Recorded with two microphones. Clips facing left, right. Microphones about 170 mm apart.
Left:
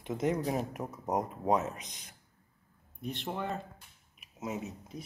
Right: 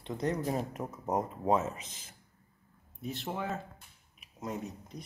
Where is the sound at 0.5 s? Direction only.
5° left (ahead or behind).